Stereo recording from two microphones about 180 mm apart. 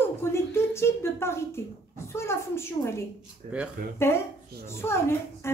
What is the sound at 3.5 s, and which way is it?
Speech, 40° right (ahead or behind).